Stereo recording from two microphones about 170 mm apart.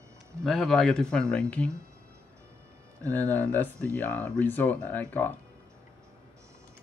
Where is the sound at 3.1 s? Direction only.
10° left (ahead or behind).